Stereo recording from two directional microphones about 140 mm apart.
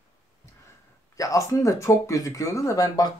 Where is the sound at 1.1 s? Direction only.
25° left (ahead or behind).